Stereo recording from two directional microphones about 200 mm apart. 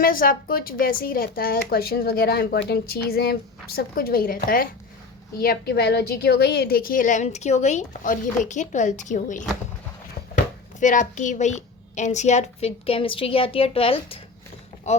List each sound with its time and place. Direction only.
0.0 s a woman's voice: 45° left (ahead or behind)
10.8 s a woman's voice: 40° left (ahead or behind)